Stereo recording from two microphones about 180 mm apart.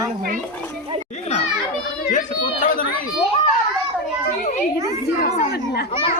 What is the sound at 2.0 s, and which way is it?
Children playing, 45° left (ahead or behind).